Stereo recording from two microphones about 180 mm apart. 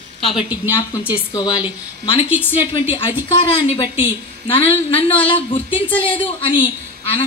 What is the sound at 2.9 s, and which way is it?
Speech, 30° left (ahead or behind).